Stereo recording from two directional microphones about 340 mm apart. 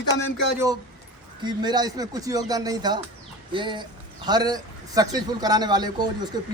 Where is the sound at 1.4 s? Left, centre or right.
Centre.